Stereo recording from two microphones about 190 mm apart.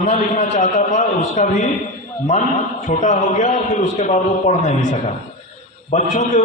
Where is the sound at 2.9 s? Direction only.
40° left (ahead or behind).